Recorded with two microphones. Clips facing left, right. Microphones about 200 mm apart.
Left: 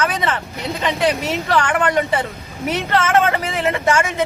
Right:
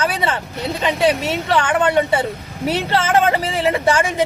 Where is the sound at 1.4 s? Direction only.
25° right (ahead or behind).